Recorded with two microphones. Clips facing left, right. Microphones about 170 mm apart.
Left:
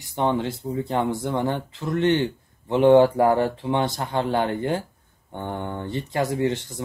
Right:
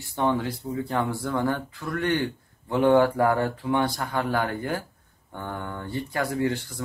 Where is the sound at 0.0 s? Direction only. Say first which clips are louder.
Left 2 dB; 20° left (ahead or behind).